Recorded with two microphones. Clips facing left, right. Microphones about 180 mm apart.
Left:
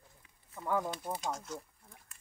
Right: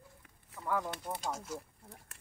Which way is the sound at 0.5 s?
80° right.